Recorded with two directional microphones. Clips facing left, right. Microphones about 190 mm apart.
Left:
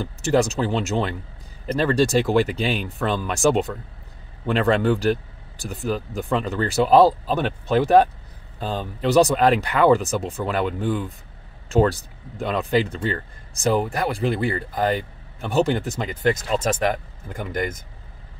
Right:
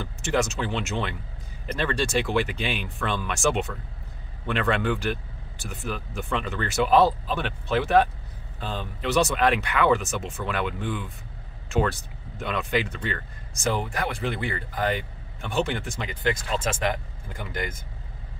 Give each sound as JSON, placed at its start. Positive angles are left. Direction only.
{"t": 0.0, "sound": "speech", "side_deg": 35}